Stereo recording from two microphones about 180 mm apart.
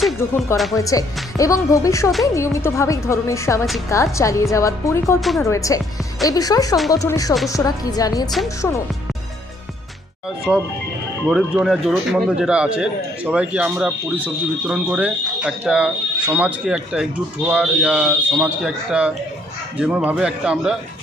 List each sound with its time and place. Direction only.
0.2 s speech: 15° left (ahead or behind)
0.5 s speech: centre (ahead or behind)
0.8 s a woman's voice: 20° left (ahead or behind)
11.3 s speech: centre (ahead or behind)